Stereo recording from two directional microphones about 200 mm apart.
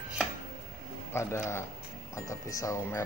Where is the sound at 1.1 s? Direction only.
15° left (ahead or behind).